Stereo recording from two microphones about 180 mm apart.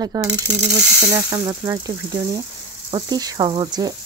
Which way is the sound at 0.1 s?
20° right (ahead or behind).